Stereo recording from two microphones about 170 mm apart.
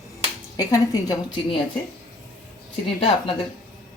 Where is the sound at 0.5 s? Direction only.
20° left (ahead or behind).